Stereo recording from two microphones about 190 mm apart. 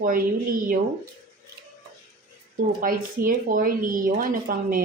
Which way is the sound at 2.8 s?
45° right (ahead or behind).